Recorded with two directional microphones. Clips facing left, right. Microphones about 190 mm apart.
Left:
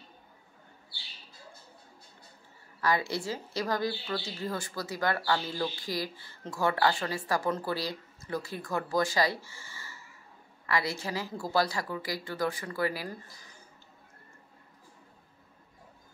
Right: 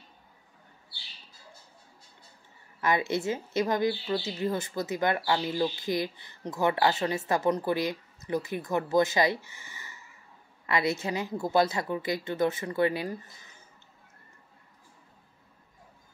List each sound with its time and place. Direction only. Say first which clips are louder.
2.8 s speech: right 2 dB; 20° right (ahead or behind)